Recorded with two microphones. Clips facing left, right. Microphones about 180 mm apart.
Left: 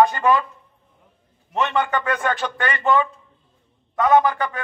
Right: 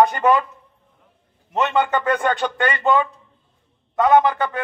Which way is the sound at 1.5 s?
20° right (ahead or behind).